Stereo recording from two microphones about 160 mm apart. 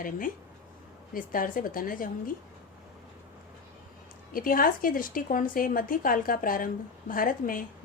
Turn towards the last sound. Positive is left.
turn(degrees=60)  # may be behind; listen again after turning